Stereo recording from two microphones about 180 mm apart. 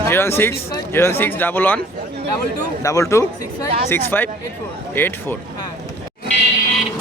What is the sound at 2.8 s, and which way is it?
Speech, 20° left (ahead or behind).